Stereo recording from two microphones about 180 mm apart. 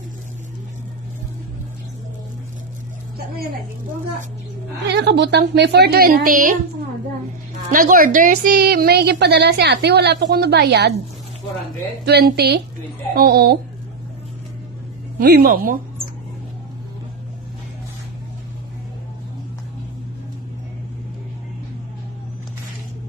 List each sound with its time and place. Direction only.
4.8 s a woman's voice: 70° right (ahead or behind); by 6.5 s 50° right (ahead or behind)
7.7 s a woman's voice: 50° right (ahead or behind); by 11.0 s 70° right (ahead or behind)
12.0 s a woman's voice: 65° right (ahead or behind)
15.1 s a woman's voice: 60° right (ahead or behind)